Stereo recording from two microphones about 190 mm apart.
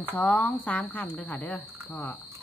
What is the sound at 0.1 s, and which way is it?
Speech, 10° left (ahead or behind).